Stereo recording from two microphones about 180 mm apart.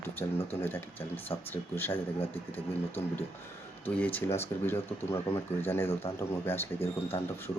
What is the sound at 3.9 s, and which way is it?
A man's voice, 10° left (ahead or behind).